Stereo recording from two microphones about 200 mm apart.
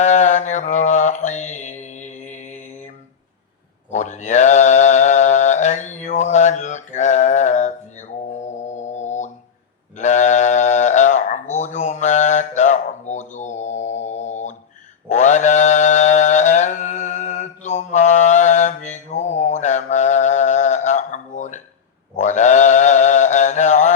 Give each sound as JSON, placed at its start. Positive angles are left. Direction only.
{"t": 0.0, "sound": "mantra", "side_deg": 35}
{"t": 3.9, "sound": "mantra", "side_deg": 35}
{"t": 8.4, "sound": "music", "side_deg": 35}
{"t": 10.0, "sound": "a sound", "side_deg": 35}
{"t": 15.1, "sound": "mantra", "side_deg": 35}